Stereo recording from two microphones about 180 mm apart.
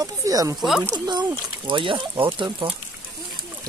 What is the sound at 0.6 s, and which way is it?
Speech, centre (ahead or behind).